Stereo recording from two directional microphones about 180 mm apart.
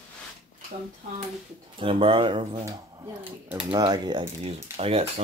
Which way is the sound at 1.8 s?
30° right (ahead or behind).